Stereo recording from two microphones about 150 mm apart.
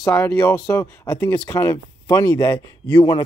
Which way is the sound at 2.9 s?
30° left (ahead or behind).